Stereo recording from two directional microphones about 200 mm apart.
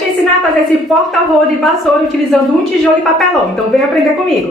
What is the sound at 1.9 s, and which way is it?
Speech, centre (ahead or behind).